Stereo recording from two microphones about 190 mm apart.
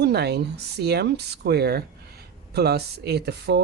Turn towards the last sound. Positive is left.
turn(degrees=-60)  # may be behind; listen again after turning